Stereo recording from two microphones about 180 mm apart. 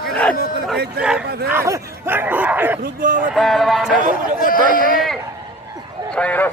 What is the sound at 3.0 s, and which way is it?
Speech, 50° right (ahead or behind).